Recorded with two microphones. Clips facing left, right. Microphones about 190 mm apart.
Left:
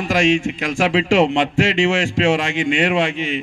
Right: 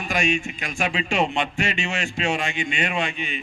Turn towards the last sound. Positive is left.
turn(degrees=90)